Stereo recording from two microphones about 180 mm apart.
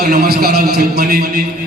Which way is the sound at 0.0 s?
60° right (ahead or behind).